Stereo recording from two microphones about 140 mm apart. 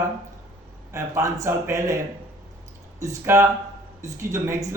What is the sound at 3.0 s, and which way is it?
A man's voice, 20° right (ahead or behind).